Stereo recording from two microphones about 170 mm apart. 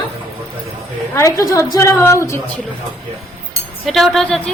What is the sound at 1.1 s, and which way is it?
A woman's voice, 20° left (ahead or behind).